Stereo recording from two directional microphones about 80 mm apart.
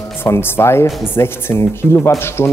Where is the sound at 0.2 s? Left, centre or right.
Left.